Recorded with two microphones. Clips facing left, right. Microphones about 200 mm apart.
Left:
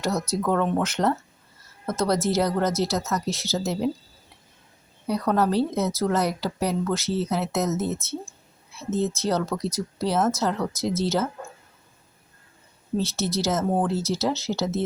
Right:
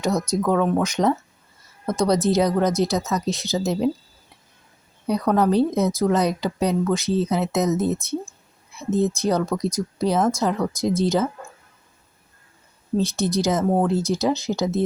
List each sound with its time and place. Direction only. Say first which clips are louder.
0.1 s speech: right 4 dB; 5° left (ahead or behind); by 3.9 s 15° right (ahead or behind)
5.3 s speech: right 4 dB; 15° right (ahead or behind)
13.0 s speech: right 4 dB; 15° right (ahead or behind)